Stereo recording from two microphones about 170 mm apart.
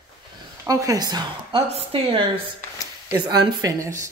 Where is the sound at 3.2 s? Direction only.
25° right (ahead or behind).